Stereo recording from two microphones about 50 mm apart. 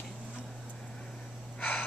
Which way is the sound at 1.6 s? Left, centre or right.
Left.